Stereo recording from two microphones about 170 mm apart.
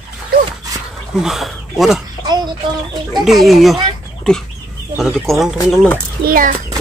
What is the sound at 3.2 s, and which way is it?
Speech, centre (ahead or behind).